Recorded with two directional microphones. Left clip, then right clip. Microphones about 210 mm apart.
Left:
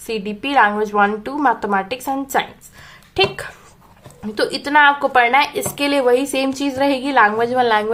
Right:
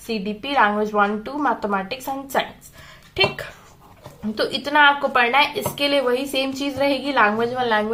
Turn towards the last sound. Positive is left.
turn(degrees=45)  # may be behind; listen again after turning